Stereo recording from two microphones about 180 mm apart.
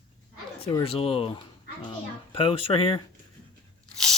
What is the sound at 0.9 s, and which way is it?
A child's voice, 30° left (ahead or behind).